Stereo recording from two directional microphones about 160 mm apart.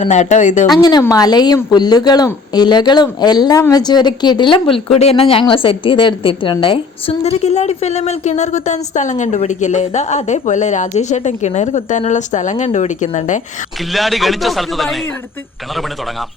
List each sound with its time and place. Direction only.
0.0 s speech: 45° left (ahead or behind)
0.8 s speech: 25° left (ahead or behind); by 13.4 s 50° left (ahead or behind)
13.9 s a man's voice: centre (ahead or behind)